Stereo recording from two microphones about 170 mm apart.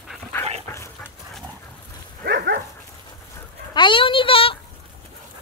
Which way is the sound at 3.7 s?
30° left (ahead or behind).